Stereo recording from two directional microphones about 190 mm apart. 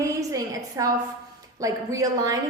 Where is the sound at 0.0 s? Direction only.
15° right (ahead or behind).